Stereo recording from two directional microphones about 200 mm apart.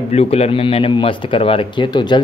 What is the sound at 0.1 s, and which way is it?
A man's voice, 30° left (ahead or behind).